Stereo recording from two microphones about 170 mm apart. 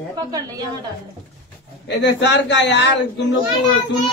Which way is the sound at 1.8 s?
90° left.